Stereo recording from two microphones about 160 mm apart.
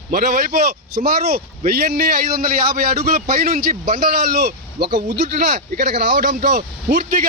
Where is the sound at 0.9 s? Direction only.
75° right (ahead or behind).